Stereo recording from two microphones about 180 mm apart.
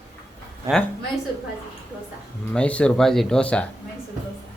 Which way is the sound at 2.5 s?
5° left (ahead or behind).